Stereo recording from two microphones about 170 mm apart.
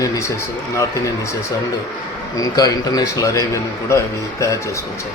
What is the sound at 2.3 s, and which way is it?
A man's voice, 20° left (ahead or behind).